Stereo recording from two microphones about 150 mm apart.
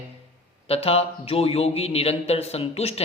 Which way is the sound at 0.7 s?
40° left (ahead or behind).